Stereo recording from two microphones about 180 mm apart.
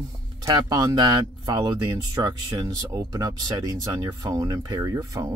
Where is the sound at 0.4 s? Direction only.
20° right (ahead or behind).